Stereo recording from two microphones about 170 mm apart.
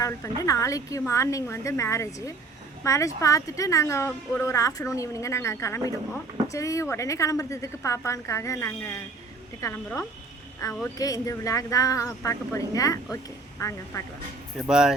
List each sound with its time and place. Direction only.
0.0 s a woman's voice: 20° left (ahead or behind)
14.7 s speech: 5° right (ahead or behind)